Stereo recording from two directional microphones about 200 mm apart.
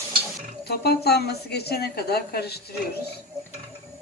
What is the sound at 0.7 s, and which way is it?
A woman's voice, 55° left (ahead or behind).